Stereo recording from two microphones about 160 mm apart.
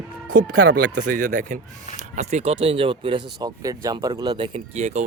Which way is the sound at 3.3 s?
20° right (ahead or behind).